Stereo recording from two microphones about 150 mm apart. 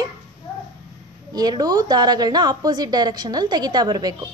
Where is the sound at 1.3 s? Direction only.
25° right (ahead or behind).